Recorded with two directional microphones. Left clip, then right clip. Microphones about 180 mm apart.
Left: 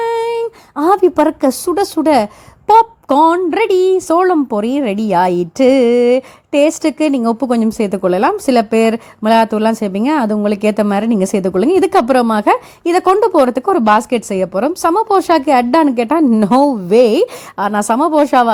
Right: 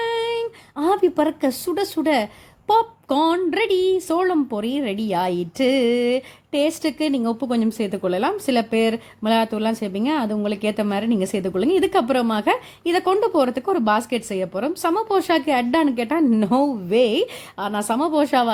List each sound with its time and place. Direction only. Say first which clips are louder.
0.0 s a woman's voice: left 7 dB; 30° left (ahead or behind)